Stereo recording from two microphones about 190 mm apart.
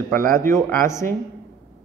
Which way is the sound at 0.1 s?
15° left (ahead or behind).